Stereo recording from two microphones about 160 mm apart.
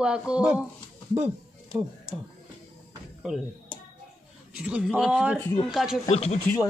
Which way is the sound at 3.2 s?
5° right (ahead or behind).